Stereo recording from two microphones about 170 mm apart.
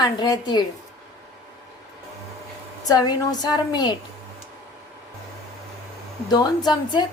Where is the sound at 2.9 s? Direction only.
25° left (ahead or behind).